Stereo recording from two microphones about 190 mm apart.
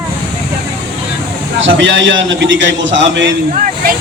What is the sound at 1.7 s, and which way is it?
A man's voice, 75° right (ahead or behind).